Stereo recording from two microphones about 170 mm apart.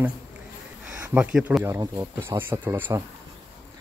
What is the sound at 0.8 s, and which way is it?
Speech, 5° right (ahead or behind).